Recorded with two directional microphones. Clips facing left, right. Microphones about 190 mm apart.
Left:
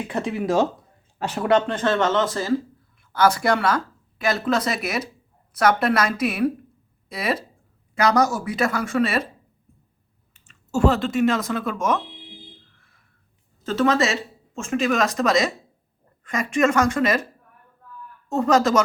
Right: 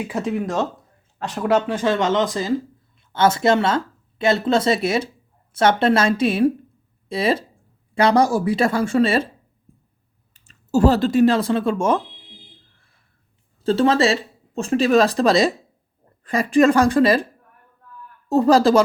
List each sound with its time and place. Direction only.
0.0 s speech: 5° right (ahead or behind); by 9.2 s 30° right (ahead or behind)
10.3 s speech: 35° right (ahead or behind)
13.7 s speech: 30° right (ahead or behind)
18.3 s speech: 35° right (ahead or behind)